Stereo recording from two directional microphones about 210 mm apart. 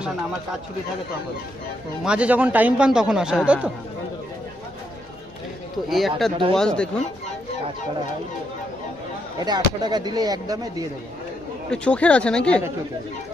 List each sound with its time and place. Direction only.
2.0 s speech: 5° right (ahead or behind)
5.9 s speech: centre (ahead or behind)
9.4 s speech: 20° right (ahead or behind)
11.7 s speech: 5° left (ahead or behind)